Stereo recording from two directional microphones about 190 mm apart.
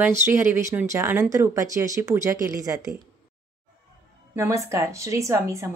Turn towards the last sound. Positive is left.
turn(degrees=-15)  # may be behind; listen again after turning